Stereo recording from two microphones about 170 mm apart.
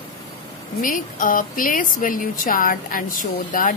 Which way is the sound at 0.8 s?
55° left (ahead or behind).